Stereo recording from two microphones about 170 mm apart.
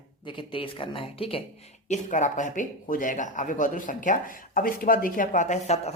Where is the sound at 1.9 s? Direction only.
45° left (ahead or behind).